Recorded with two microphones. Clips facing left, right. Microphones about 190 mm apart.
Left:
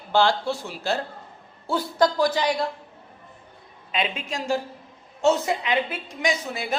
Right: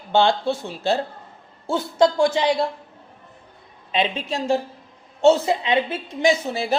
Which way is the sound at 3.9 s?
30° right (ahead or behind).